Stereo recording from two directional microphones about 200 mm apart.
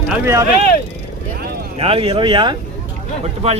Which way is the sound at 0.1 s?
15° right (ahead or behind).